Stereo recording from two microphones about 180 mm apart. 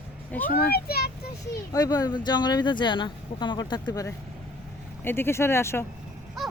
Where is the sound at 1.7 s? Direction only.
20° left (ahead or behind).